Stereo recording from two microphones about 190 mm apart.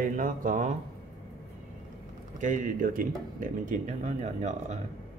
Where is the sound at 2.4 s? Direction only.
40° right (ahead or behind).